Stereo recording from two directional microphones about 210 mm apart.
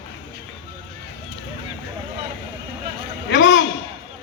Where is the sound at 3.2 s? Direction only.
60° left (ahead or behind).